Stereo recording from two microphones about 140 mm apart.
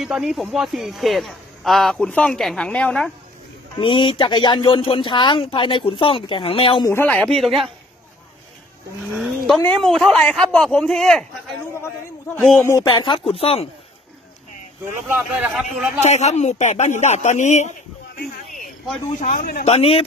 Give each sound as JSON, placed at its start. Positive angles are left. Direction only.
{"t": 0.0, "sound": "speech", "side_deg": -5}
{"t": 3.7, "sound": "speech", "side_deg": 35}
{"t": 6.9, "sound": "speech", "side_deg": 15}
{"t": 9.1, "sound": "speech", "side_deg": 0}
{"t": 12.4, "sound": "speech", "side_deg": 5}
{"t": 12.9, "sound": "speech", "side_deg": 35}
{"t": 14.9, "sound": "speech", "side_deg": -15}
{"t": 16.0, "sound": "a man's voice", "side_deg": 55}
{"t": 18.5, "sound": "a sound", "side_deg": 0}
{"t": 19.1, "sound": "speech", "side_deg": 65}